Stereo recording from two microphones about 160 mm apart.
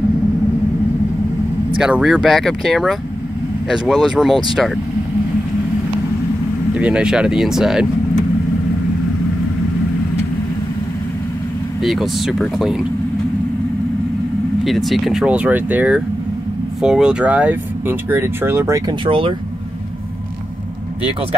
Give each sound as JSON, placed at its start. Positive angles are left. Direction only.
{"t": 1.8, "sound": "speech", "side_deg": -5}
{"t": 6.7, "sound": "speech", "side_deg": -5}
{"t": 11.8, "sound": "speech", "side_deg": 0}
{"t": 14.6, "sound": "speech", "side_deg": 0}
{"t": 19.0, "sound": "speech", "side_deg": -35}